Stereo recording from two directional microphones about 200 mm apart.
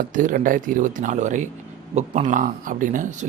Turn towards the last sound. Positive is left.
turn(degrees=-40)  # may be behind; listen again after turning